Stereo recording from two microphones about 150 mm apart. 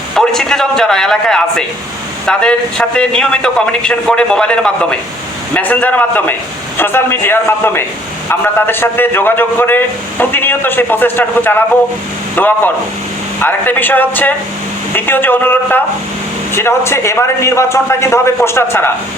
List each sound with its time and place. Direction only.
0.2 s a man's voice: 5° left (ahead or behind)